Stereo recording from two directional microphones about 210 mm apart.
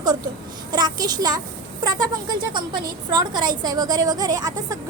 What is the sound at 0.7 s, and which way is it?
Speech, 20° right (ahead or behind).